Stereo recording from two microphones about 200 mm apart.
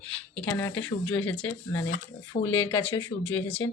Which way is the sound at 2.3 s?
35° left (ahead or behind).